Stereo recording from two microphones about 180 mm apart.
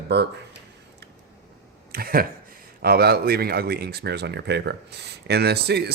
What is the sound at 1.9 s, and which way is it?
Speech, 55° right (ahead or behind).